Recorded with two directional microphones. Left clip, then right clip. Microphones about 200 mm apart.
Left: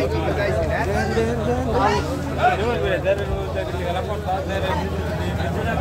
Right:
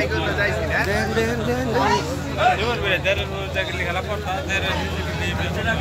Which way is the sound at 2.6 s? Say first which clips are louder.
Even; 30° left (ahead or behind).